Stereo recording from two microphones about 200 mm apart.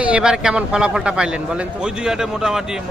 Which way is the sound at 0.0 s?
5° right (ahead or behind).